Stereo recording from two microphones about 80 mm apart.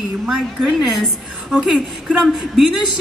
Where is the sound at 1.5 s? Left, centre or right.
Centre.